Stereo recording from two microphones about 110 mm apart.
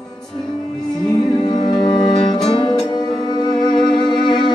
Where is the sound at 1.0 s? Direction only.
40° left (ahead or behind).